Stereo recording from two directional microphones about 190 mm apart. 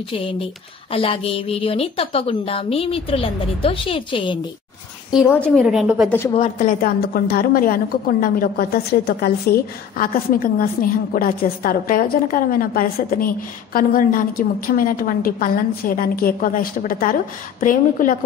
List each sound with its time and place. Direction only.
0.9 s a woman's voice: 30° left (ahead or behind)
5.2 s a woman's voice: 10° left (ahead or behind)
5.6 s speech: 5° right (ahead or behind)
6.0 s a woman's voice: 15° left (ahead or behind)
6.6 s a woman's voice: 50° left (ahead or behind)